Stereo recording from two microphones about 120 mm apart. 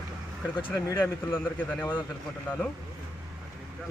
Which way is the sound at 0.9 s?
20° left (ahead or behind).